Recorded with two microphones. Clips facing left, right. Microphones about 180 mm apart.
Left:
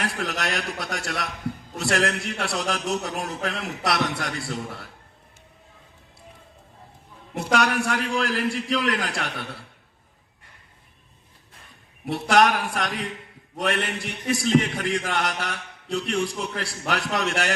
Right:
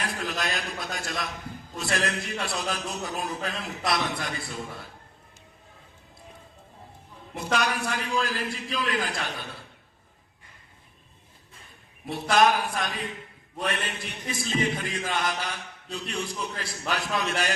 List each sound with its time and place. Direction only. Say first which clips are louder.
0.0 s a man's voice: left 3 dB; 75° left (ahead or behind)
7.3 s a man's voice: left 4 dB; 70° left (ahead or behind)
12.0 s a man's voice: left 2 dB; 70° left (ahead or behind)